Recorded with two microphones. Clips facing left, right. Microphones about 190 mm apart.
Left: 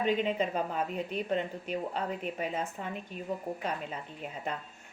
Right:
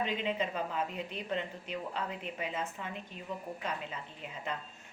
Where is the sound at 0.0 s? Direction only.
45° left (ahead or behind).